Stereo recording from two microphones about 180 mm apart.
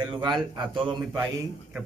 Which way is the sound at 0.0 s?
25° right (ahead or behind).